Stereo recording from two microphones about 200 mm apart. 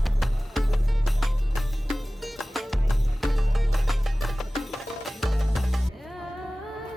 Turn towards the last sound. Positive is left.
turn(degrees=0)  # may be behind; listen again after turning